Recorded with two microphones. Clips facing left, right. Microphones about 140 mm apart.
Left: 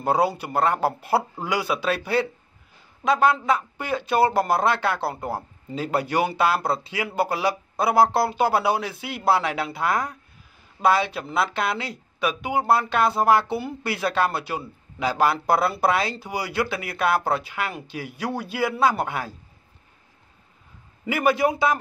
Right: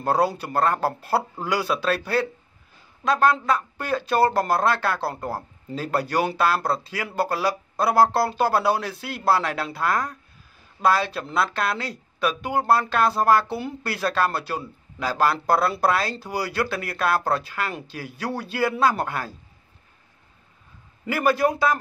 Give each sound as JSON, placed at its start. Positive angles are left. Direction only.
{"t": 0.0, "sound": "speech", "side_deg": 10}
{"t": 21.1, "sound": "speech", "side_deg": 15}